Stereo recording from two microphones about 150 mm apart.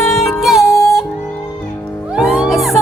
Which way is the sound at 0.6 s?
20° left (ahead or behind).